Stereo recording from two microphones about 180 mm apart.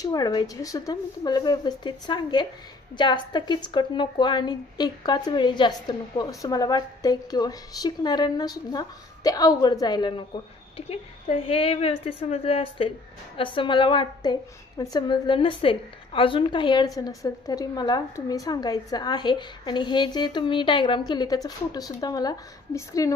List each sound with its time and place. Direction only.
0.0 s a woman's voice: 20° left (ahead or behind)